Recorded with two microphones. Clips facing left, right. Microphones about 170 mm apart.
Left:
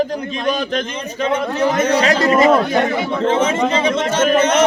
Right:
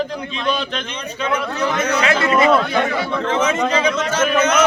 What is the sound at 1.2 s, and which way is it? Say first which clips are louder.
Speech: left 4 dB; 30° left (ahead or behind).